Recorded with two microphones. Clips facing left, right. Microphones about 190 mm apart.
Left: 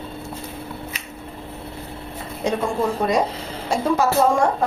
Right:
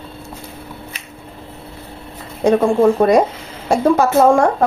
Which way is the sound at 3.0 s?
50° right (ahead or behind).